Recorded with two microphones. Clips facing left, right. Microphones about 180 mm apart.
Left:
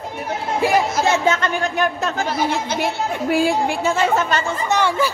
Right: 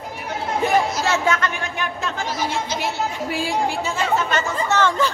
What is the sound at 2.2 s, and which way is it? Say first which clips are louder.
Speech: left 2 dB; 60° left (ahead or behind).